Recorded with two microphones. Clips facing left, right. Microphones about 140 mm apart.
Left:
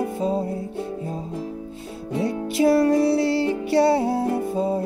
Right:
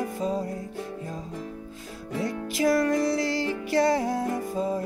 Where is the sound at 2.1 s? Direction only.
30° left (ahead or behind).